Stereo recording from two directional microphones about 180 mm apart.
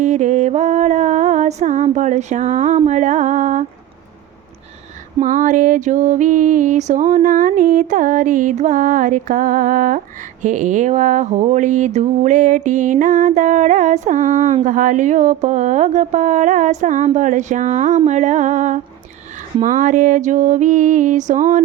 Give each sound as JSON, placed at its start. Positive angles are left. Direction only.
{"t": 0.0, "sound": "music", "side_deg": -45}
{"t": 5.2, "sound": "mantra", "side_deg": -45}